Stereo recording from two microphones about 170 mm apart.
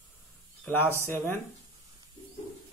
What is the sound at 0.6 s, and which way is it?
Speech, 10° left (ahead or behind).